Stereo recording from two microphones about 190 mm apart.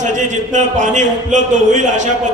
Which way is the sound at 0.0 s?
40° right (ahead or behind).